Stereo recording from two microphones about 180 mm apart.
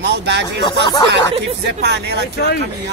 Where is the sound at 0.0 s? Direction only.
75° right (ahead or behind).